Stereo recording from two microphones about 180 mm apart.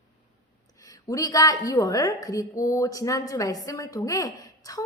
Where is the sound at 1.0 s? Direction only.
20° left (ahead or behind).